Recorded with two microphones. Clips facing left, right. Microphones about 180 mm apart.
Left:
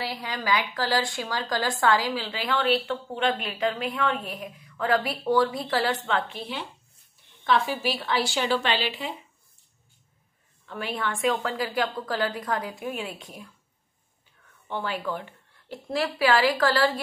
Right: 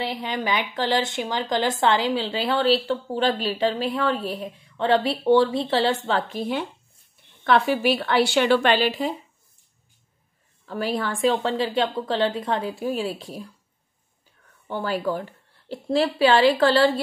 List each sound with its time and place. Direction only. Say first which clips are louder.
0.0 s a woman's voice: right 5 dB; 20° right (ahead or behind); by 6.6 s 45° right (ahead or behind)
7.4 s a woman's voice: right 5 dB; 60° right (ahead or behind); by 9.1 s 45° right (ahead or behind)
10.6 s a woman's voice: right 5 dB; 40° right (ahead or behind)
14.7 s a woman's voice: right 5 dB; 40° right (ahead or behind)